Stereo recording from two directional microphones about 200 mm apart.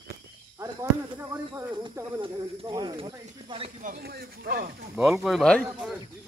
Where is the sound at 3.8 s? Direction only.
45° right (ahead or behind).